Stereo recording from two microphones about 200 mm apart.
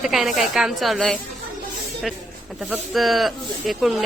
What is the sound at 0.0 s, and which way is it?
Speech, centre (ahead or behind).